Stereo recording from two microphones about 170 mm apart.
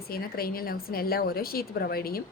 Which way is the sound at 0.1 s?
60° left (ahead or behind).